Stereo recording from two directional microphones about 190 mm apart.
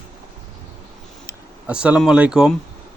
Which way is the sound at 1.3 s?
5° right (ahead or behind).